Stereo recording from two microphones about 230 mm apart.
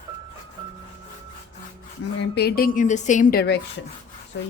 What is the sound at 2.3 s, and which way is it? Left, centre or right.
A woman's voice, left.